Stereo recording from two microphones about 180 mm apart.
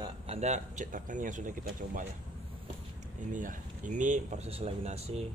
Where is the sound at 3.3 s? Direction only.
45° right (ahead or behind).